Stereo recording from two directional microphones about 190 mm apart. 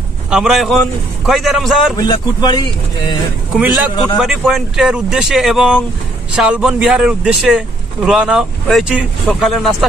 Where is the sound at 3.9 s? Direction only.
25° left (ahead or behind).